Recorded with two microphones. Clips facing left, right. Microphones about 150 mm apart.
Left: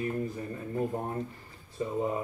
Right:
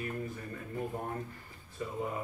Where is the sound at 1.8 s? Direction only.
25° left (ahead or behind).